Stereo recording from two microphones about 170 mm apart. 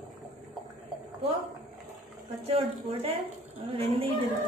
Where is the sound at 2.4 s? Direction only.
35° right (ahead or behind).